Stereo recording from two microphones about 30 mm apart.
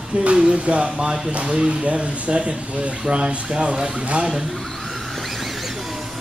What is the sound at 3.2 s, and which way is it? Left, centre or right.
Speech, right.